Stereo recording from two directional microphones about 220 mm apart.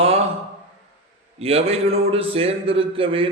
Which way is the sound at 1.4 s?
25° right (ahead or behind).